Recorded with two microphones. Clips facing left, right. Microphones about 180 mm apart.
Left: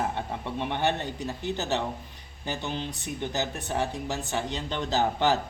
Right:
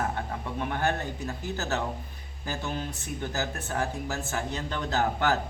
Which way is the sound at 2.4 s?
30° left (ahead or behind).